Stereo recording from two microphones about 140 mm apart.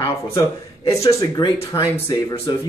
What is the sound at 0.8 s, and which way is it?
Speech, 25° left (ahead or behind).